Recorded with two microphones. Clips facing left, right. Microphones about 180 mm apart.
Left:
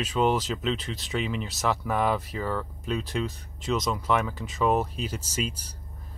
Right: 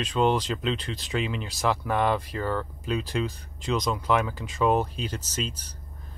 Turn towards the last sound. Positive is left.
turn(degrees=10)  # may be behind; listen again after turning